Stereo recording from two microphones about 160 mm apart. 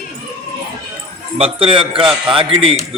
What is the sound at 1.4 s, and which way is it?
A man's voice, 35° right (ahead or behind).